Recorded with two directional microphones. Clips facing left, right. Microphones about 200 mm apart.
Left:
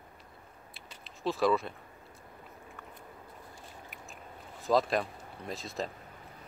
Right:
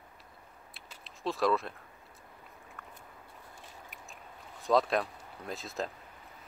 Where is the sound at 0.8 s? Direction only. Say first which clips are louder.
Left 2 dB; centre (ahead or behind).